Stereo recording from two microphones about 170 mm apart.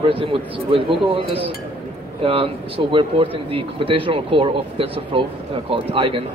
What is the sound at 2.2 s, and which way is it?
A man's voice, 30° right (ahead or behind).